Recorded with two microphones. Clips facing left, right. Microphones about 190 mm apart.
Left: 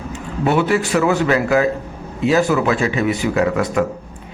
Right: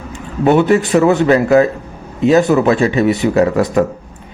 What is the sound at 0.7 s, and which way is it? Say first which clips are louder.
Speech: right 5 dB; 35° right (ahead or behind).